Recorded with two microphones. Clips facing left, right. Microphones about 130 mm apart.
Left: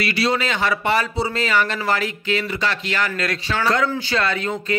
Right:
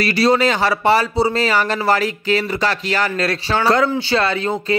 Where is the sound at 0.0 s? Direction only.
40° right (ahead or behind).